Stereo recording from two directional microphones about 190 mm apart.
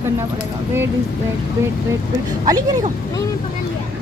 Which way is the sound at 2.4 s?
20° right (ahead or behind).